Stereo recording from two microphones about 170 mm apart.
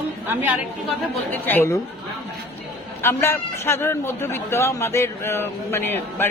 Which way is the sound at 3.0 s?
15° left (ahead or behind).